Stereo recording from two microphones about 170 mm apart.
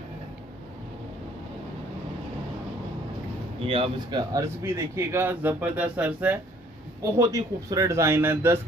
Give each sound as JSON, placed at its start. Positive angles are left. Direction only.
{"t": 3.6, "sound": "speech", "side_deg": -30}
{"t": 4.3, "sound": "speech", "side_deg": -15}